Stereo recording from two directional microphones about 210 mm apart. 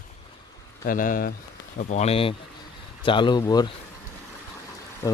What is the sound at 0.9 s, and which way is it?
Speech, 40° left (ahead or behind).